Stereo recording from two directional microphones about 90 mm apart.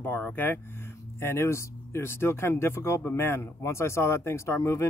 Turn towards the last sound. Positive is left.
turn(degrees=30)  # may be behind; listen again after turning